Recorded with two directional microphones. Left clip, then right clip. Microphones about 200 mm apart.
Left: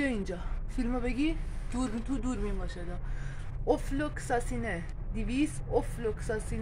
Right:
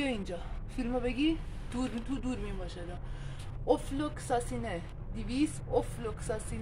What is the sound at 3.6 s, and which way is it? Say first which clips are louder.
A woman's voice: even; 30° left (ahead or behind).